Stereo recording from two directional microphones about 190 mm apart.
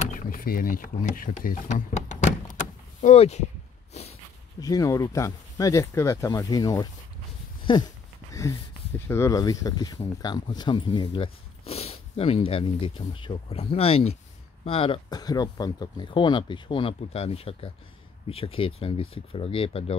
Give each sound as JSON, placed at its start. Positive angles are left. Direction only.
{"t": 0.0, "sound": "speech", "side_deg": 45}
{"t": 4.6, "sound": "speech", "side_deg": 20}
{"t": 8.3, "sound": "a sound", "side_deg": 15}
{"t": 9.0, "sound": "speech", "side_deg": 15}